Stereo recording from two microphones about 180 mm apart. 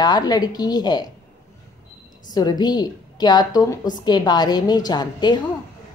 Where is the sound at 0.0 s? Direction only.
20° left (ahead or behind).